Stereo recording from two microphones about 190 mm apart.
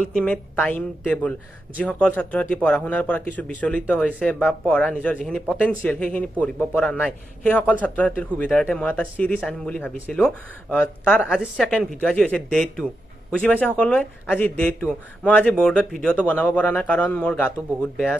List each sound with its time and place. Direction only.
0.1 s a man's voice: 5° left (ahead or behind)